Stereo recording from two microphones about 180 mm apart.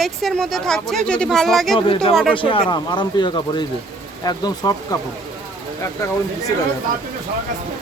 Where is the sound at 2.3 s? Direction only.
30° left (ahead or behind).